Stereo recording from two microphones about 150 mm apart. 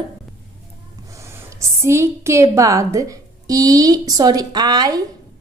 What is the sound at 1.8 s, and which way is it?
Speech, 20° right (ahead or behind).